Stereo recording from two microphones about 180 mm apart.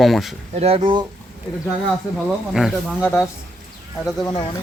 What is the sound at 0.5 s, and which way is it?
Speech, 35° right (ahead or behind).